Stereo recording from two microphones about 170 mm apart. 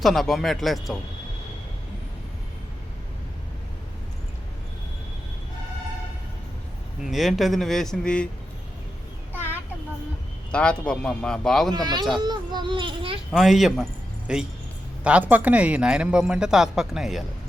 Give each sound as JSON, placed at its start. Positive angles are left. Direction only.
{"t": 0.0, "sound": "speech", "side_deg": 0}
{"t": 7.0, "sound": "speech", "side_deg": 0}
{"t": 10.5, "sound": "speech", "side_deg": 5}
{"t": 11.7, "sound": "a child's voice", "side_deg": -25}
{"t": 13.3, "sound": "speech", "side_deg": 0}